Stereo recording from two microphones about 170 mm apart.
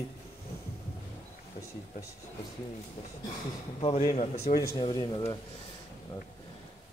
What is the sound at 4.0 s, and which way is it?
Speech, 55° left (ahead or behind).